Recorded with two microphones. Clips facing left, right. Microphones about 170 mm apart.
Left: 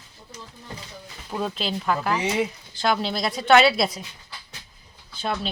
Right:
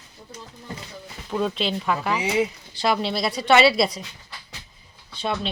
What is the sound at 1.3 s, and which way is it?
A woman's voice, 5° left (ahead or behind).